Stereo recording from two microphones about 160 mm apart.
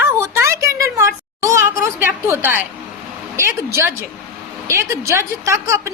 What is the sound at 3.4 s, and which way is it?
A woman's voice, 15° right (ahead or behind).